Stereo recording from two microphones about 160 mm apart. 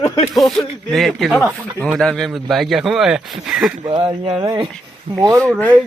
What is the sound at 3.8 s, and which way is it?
Speech, 25° right (ahead or behind).